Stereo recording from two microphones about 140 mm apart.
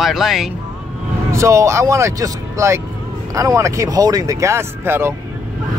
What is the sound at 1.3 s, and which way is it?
Speech, 20° right (ahead or behind).